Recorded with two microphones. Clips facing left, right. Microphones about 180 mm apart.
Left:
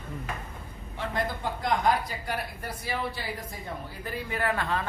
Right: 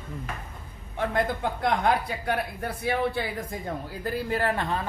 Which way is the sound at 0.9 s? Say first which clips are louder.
Right 5 dB; 55° right (ahead or behind).